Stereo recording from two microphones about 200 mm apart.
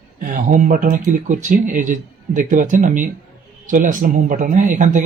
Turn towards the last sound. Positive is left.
turn(degrees=-40)  # may be behind; listen again after turning